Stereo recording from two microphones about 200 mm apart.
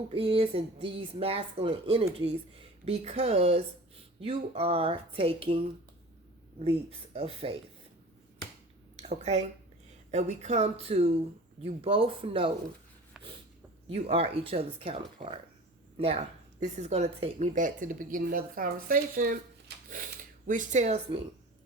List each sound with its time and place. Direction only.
0.1 s speech: 30° right (ahead or behind)
6.7 s speech: 30° right (ahead or behind)
9.0 s speech: 30° right (ahead or behind)
13.2 s a sound: centre (ahead or behind)
13.8 s speech: 30° right (ahead or behind)